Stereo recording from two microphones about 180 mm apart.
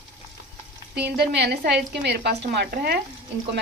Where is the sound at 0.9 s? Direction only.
65° right (ahead or behind).